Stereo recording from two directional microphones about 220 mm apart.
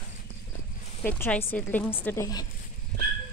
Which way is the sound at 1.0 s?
5° left (ahead or behind).